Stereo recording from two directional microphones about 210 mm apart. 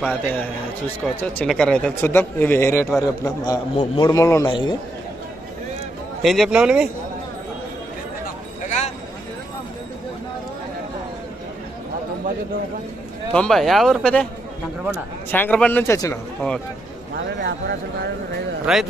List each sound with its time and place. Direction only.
1.0 s a man's voice: 5° left (ahead or behind); by 4.7 s 20° left (ahead or behind)
6.2 s speech: centre (ahead or behind)
8.6 s a sound: 35° left (ahead or behind)
13.3 s speech: 5° left (ahead or behind)
17.3 s a man's voice: 55° right (ahead or behind)
18.7 s speech: 5° right (ahead or behind)